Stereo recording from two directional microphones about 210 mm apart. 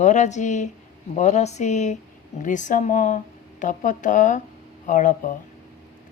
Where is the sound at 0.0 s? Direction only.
35° left (ahead or behind).